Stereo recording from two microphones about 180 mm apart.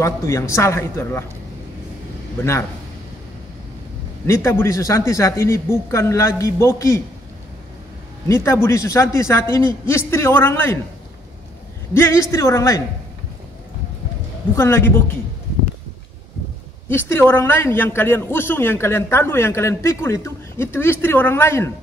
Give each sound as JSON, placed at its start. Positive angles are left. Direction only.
{"t": 0.0, "sound": "a man's voice", "side_deg": 15}
{"t": 4.3, "sound": "a man's voice", "side_deg": 15}
{"t": 8.3, "sound": "a man's voice", "side_deg": 15}
{"t": 11.9, "sound": "a man's voice", "side_deg": 15}
{"t": 14.5, "sound": "a man's voice", "side_deg": 15}
{"t": 16.9, "sound": "a man's voice", "side_deg": 10}